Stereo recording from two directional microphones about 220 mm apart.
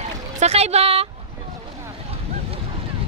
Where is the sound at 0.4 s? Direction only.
30° right (ahead or behind).